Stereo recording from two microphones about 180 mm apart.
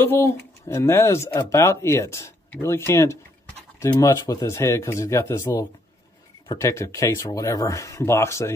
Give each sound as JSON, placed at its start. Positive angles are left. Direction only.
{"t": 0.0, "sound": "speech", "side_deg": 15}